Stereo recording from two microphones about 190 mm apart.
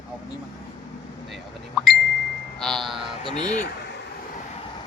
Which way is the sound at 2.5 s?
Centre (ahead or behind).